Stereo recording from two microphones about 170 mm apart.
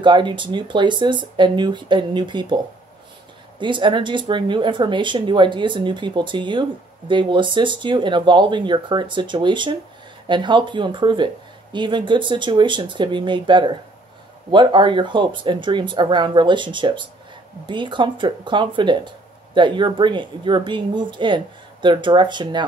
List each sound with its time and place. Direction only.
0.0 s speech: 25° right (ahead or behind)